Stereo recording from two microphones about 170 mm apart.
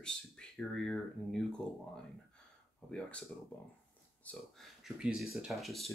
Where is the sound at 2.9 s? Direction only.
5° left (ahead or behind).